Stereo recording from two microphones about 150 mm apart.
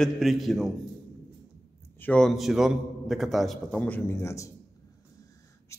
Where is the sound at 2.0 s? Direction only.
10° left (ahead or behind).